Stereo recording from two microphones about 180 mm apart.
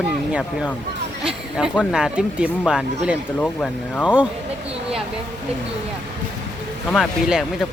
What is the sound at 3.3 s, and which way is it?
Speech, 5° left (ahead or behind).